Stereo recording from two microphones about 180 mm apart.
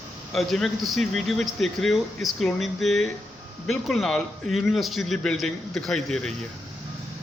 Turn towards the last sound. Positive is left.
turn(degrees=5)  # may be behind; listen again after turning